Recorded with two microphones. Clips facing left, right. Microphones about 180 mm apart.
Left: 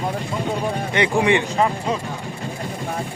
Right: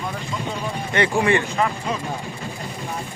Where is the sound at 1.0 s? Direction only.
15° left (ahead or behind).